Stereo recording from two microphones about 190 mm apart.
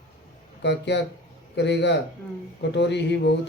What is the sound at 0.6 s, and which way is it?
Speech, 65° left (ahead or behind).